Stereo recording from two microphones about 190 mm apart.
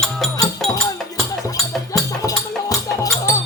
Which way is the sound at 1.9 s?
20° left (ahead or behind).